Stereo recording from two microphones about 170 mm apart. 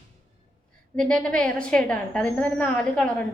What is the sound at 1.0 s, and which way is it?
Speech, 5° left (ahead or behind).